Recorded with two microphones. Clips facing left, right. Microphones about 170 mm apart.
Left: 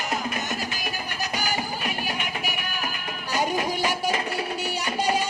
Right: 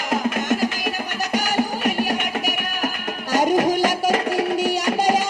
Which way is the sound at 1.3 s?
75° right (ahead or behind).